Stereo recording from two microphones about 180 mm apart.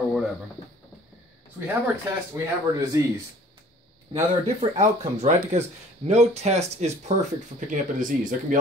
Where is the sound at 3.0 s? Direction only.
15° right (ahead or behind).